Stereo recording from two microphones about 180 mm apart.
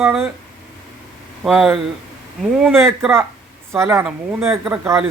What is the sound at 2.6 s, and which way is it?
A man's voice, 15° right (ahead or behind).